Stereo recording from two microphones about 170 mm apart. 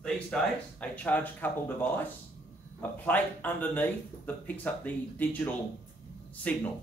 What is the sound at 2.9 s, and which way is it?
Speech, 10° left (ahead or behind).